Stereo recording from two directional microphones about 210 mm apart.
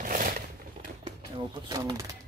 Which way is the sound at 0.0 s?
40° right (ahead or behind).